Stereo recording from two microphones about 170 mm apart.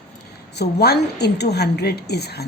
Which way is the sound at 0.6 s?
70° left (ahead or behind).